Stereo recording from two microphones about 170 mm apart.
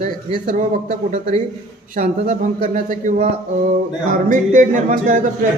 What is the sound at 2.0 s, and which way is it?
Speech, 45° right (ahead or behind).